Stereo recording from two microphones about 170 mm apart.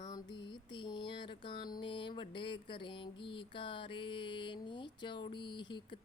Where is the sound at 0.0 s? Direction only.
25° left (ahead or behind).